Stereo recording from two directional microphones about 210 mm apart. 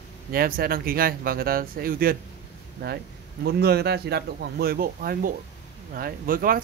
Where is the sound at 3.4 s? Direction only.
50° right (ahead or behind).